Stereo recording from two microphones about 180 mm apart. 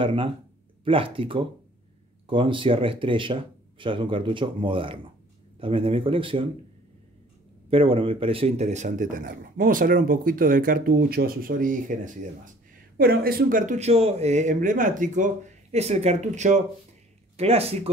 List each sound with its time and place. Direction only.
0.0 s speech: 30° right (ahead or behind)
7.7 s speech: 30° right (ahead or behind)